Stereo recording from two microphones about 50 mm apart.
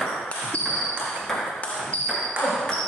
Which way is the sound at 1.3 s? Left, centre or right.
Centre.